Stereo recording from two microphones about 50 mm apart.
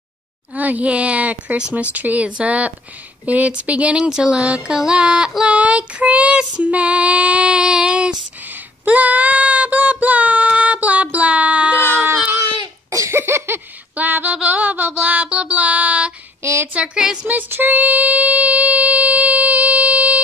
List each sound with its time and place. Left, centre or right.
0.6 s female singing: right
4.6 s music: centre
5.4 s female singing: right
8.5 s child singing: right
12.9 s a sound: right
13.2 s a sound: right
13.9 s a sound: right
15.0 s music: right
16.7 s female singing: right
17.3 s child singing: right